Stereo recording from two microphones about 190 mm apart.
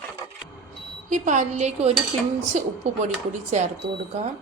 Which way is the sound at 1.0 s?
40° right (ahead or behind).